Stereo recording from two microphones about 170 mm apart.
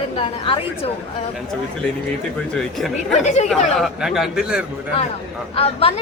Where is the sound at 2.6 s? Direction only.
Centre (ahead or behind).